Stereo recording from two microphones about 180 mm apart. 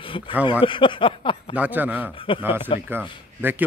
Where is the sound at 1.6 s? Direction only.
10° right (ahead or behind).